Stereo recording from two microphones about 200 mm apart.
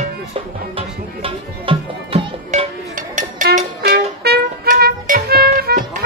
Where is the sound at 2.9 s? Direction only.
40° right (ahead or behind).